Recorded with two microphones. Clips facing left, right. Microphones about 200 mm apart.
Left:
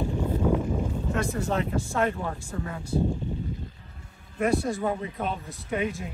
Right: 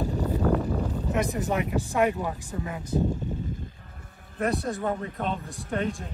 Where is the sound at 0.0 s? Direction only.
40° right (ahead or behind).